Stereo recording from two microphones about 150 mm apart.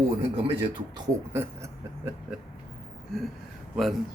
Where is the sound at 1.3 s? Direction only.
15° right (ahead or behind).